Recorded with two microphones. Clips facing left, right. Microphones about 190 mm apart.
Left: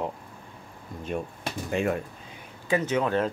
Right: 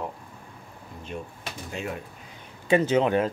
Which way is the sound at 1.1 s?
55° left (ahead or behind).